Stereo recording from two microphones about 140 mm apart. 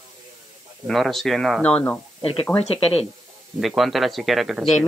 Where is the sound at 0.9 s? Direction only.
Centre (ahead or behind).